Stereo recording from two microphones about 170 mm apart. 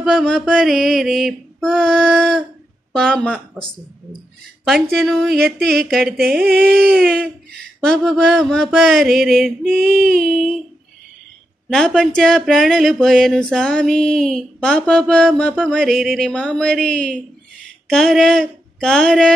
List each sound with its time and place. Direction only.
0.0 s speech: centre (ahead or behind)
4.6 s speech: centre (ahead or behind)
7.5 s speech: 5° left (ahead or behind)
10.0 s a sound: 60° right (ahead or behind)
11.7 s speech: 5° left (ahead or behind)